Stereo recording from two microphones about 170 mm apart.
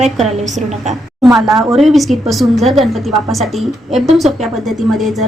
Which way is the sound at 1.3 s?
Centre (ahead or behind).